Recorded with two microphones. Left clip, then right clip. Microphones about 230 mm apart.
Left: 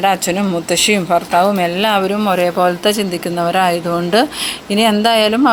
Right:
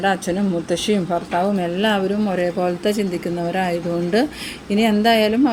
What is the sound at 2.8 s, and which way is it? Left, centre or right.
Speech, left.